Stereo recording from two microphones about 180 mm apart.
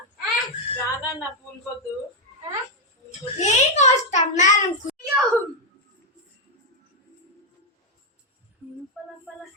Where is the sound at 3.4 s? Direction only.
40° left (ahead or behind).